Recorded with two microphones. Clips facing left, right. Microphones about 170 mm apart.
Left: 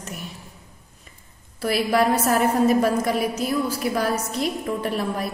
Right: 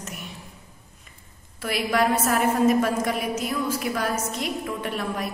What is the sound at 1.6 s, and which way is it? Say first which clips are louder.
A woman's voice: left 3 dB; 35° left (ahead or behind).